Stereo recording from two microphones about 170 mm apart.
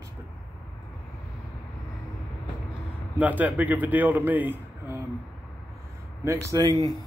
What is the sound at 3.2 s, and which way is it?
Speech, 10° right (ahead or behind).